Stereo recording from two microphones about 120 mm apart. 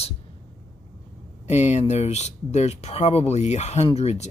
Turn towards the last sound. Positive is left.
turn(degrees=60)  # may be behind; listen again after turning